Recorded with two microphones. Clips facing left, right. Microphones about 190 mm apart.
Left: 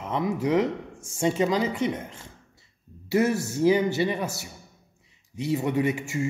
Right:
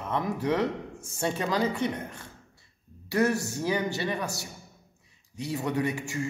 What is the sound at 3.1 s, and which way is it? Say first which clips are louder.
Speech: left 2 dB; 20° left (ahead or behind).